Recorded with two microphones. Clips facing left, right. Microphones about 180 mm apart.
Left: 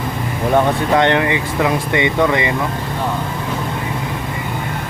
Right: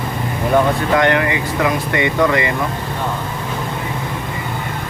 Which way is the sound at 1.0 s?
25° left (ahead or behind).